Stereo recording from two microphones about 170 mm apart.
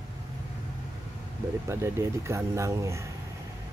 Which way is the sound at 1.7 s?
15° right (ahead or behind).